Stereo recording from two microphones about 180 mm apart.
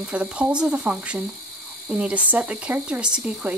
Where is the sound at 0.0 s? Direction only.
5° right (ahead or behind).